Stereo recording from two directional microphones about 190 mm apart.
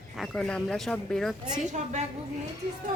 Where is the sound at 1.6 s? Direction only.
40° right (ahead or behind).